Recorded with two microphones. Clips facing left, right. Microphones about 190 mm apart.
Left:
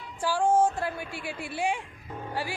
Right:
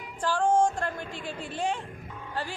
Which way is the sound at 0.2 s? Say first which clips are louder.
Even; 10° left (ahead or behind).